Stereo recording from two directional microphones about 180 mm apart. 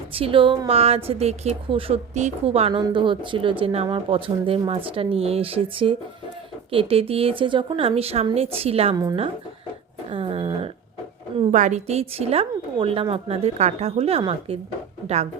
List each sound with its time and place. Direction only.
0.1 s a woman's voice: 30° right (ahead or behind)
10.1 s speech: 30° right (ahead or behind)
11.5 s a woman's voice: 40° right (ahead or behind)